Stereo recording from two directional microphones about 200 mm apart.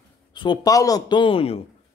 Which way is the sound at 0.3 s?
25° left (ahead or behind).